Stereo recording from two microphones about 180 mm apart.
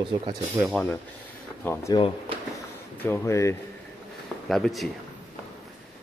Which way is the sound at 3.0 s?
15° left (ahead or behind).